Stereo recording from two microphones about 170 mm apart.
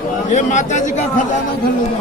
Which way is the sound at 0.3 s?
45° left (ahead or behind).